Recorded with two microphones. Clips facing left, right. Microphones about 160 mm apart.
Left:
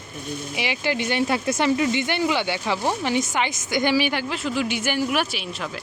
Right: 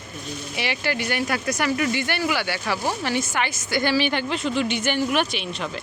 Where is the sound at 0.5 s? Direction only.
15° left (ahead or behind).